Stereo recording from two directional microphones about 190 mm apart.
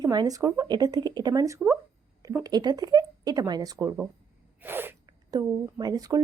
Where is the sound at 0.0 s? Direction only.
20° right (ahead or behind).